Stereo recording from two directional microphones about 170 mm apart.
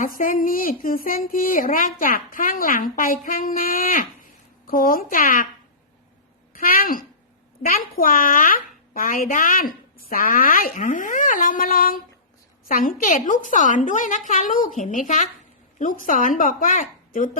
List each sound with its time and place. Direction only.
0.0 s a woman's voice: 55° left (ahead or behind)
6.5 s a child's voice: 55° left (ahead or behind)